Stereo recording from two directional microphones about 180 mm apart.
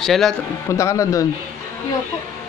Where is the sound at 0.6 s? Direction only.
15° left (ahead or behind).